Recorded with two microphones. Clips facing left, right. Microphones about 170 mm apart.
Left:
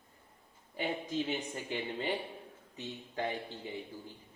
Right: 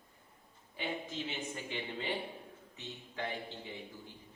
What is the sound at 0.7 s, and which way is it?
Speech, 45° left (ahead or behind).